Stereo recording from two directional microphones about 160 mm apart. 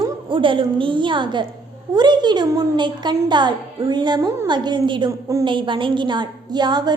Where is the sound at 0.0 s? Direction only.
30° right (ahead or behind).